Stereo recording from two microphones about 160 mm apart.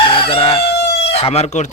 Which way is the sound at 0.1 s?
35° left (ahead or behind).